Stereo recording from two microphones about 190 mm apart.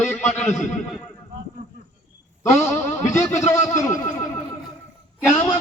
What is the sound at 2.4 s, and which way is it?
A man's voice, 15° left (ahead or behind).